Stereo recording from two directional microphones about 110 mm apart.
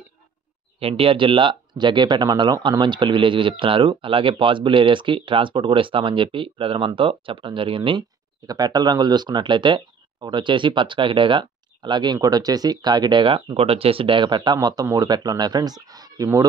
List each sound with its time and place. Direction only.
0.7 s speech: 60° right (ahead or behind)
8.5 s speech: 40° right (ahead or behind)